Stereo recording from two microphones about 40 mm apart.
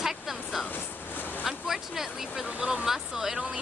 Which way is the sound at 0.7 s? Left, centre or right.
Left.